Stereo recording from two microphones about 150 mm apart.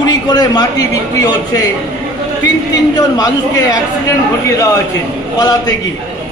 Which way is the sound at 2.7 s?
25° left (ahead or behind).